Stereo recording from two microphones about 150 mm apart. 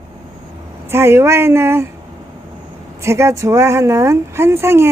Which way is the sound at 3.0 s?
20° right (ahead or behind).